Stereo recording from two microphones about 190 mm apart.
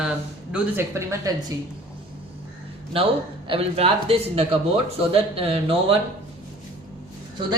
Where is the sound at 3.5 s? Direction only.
30° right (ahead or behind).